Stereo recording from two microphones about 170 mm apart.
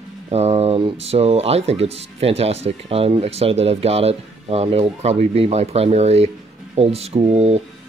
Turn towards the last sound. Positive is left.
turn(degrees=-40)  # may be behind; listen again after turning